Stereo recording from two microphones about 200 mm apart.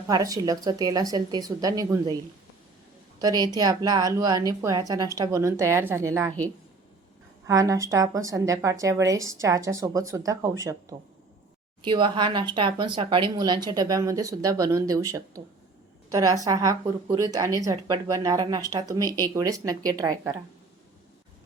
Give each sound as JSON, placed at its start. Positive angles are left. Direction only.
{"t": 0.1, "sound": "a woman's voice", "side_deg": -15}
{"t": 3.2, "sound": "a woman's voice", "side_deg": -20}
{"t": 7.4, "sound": "a woman's voice", "side_deg": -15}